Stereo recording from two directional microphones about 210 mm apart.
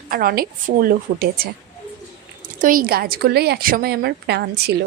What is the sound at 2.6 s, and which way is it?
A woman's voice, 40° right (ahead or behind).